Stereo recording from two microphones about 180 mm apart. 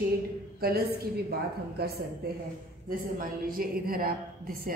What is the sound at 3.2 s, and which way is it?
Speech, 55° right (ahead or behind).